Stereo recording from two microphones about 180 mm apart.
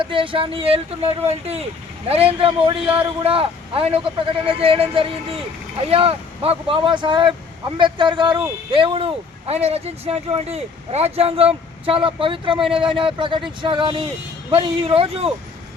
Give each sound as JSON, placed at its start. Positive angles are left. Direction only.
{"t": 0.0, "sound": "a man's voice", "side_deg": -30}